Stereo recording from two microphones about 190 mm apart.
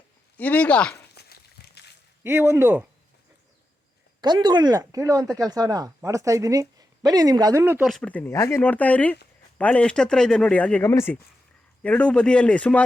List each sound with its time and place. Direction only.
0.3 s speech: 10° left (ahead or behind)
1.1 s a sound: 60° left (ahead or behind)
2.2 s speech: 15° right (ahead or behind)
4.2 s speech: 20° right (ahead or behind)
7.9 s speech: 5° left (ahead or behind)